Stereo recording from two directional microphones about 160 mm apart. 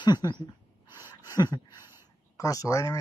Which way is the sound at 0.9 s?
15° right (ahead or behind).